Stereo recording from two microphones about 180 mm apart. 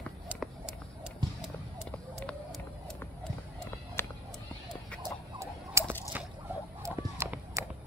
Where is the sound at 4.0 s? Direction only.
10° left (ahead or behind).